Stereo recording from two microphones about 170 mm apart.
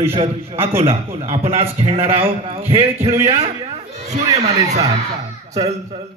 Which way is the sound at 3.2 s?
40° right (ahead or behind).